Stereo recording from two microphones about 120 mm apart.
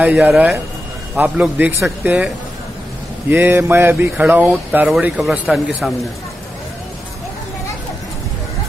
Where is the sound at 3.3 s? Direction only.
20° right (ahead or behind).